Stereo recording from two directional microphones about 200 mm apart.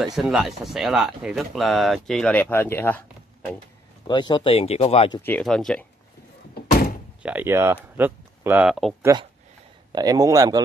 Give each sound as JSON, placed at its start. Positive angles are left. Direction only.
{"t": 0.0, "sound": "speech", "side_deg": 0}
{"t": 4.1, "sound": "speech", "side_deg": 20}
{"t": 5.2, "sound": "speech", "side_deg": 5}
{"t": 6.7, "sound": "door", "side_deg": 45}
{"t": 7.2, "sound": "speech", "side_deg": -10}
{"t": 9.0, "sound": "speech", "side_deg": -20}